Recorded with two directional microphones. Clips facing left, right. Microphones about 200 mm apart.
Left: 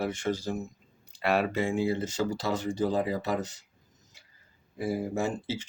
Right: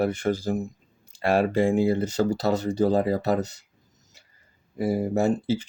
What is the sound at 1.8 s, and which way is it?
Speech, 60° right (ahead or behind).